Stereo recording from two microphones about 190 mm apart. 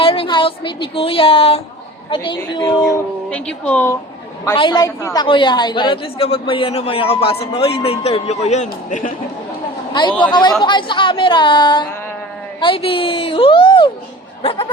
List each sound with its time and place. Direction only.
0.0 s a woman's voice: 30° left (ahead or behind)
2.8 s speech: 5° left (ahead or behind)
4.5 s a woman's voice: 25° left (ahead or behind); by 9.1 s 40° left (ahead or behind)
9.9 s a woman's voice: 25° left (ahead or behind)